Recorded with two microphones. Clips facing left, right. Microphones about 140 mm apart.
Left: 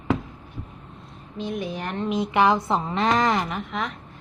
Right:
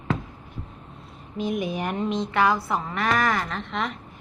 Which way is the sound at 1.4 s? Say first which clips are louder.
Right 3 dB; 10° right (ahead or behind).